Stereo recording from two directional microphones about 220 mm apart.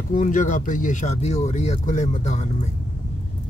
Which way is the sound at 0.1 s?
35° left (ahead or behind).